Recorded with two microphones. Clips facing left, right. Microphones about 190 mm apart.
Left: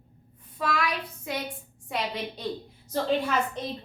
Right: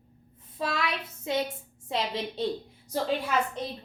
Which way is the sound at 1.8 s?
25° right (ahead or behind).